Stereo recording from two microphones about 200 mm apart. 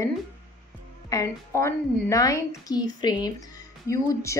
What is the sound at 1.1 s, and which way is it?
A woman's voice, 15° left (ahead or behind).